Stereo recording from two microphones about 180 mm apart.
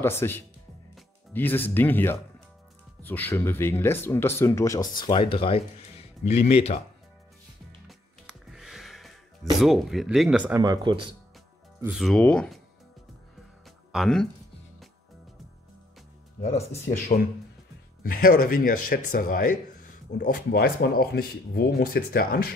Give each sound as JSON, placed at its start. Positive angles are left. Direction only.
{"t": 0.0, "sound": "speech", "side_deg": 15}
{"t": 8.3, "sound": "music", "side_deg": 0}
{"t": 10.6, "sound": "speech", "side_deg": -25}
{"t": 12.0, "sound": "speech", "side_deg": 5}
{"t": 13.9, "sound": "speech", "side_deg": 0}
{"t": 16.3, "sound": "speech", "side_deg": 45}